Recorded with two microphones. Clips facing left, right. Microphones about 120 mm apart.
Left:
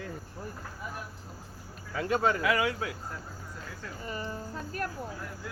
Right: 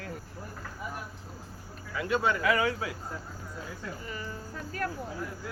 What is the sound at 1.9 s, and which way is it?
Speech, 40° left (ahead or behind).